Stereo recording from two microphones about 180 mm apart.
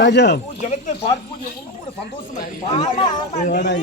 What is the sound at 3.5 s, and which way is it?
Speech, 70° left (ahead or behind).